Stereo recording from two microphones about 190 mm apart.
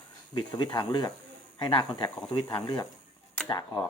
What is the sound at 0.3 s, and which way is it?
Speech, 25° left (ahead or behind).